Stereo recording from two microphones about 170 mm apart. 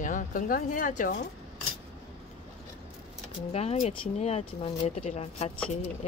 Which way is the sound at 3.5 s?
35° left (ahead or behind).